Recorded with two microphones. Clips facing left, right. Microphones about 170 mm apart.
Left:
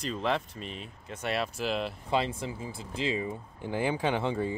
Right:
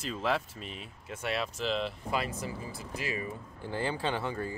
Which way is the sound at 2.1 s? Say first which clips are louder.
Left 7 dB; 25° left (ahead or behind).